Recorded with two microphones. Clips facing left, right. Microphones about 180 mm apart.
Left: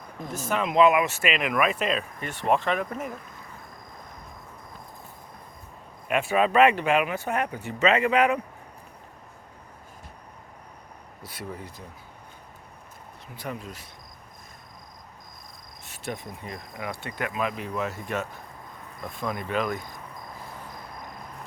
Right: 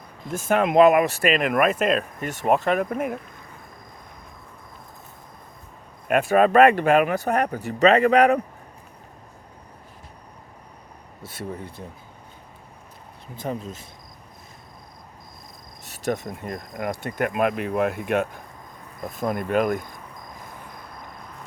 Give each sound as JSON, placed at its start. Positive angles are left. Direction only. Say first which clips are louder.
{"t": 0.3, "sound": "speech", "louder": "right 5 dB", "side_deg": -55}
{"t": 6.1, "sound": "speech", "louder": "right 5 dB", "side_deg": -45}
{"t": 11.2, "sound": "speech", "louder": "right 4 dB", "side_deg": -25}
{"t": 13.4, "sound": "speech", "louder": "right 6 dB", "side_deg": -30}
{"t": 15.9, "sound": "cricket", "louder": "right 8 dB", "side_deg": -40}
{"t": 16.4, "sound": "speech", "louder": "right 6 dB", "side_deg": -50}